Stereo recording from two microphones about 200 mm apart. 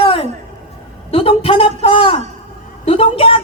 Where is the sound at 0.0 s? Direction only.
25° left (ahead or behind).